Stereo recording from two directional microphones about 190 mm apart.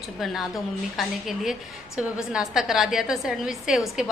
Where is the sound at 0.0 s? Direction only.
Centre (ahead or behind).